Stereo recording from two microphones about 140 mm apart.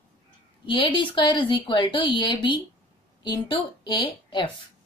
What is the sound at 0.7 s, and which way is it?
A woman's voice, 35° left (ahead or behind).